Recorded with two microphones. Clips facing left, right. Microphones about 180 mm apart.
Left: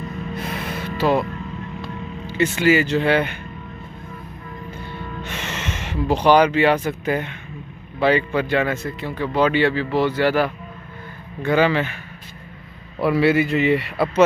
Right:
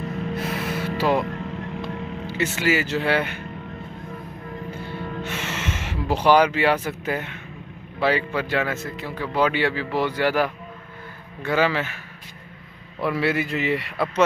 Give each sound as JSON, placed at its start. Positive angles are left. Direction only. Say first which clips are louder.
{"t": 0.0, "sound": "music", "louder": "right 2 dB", "side_deg": -70}
{"t": 0.4, "sound": "music", "louder": "even", "side_deg": -5}
{"t": 1.2, "sound": "vehicle", "louder": "right 1 dB", "side_deg": -75}
{"t": 2.2, "sound": "speech", "louder": "left 6 dB", "side_deg": -5}
{"t": 5.2, "sound": "speech", "louder": "left 2 dB", "side_deg": -5}
{"t": 13.0, "sound": "speech", "louder": "left 6 dB", "side_deg": 0}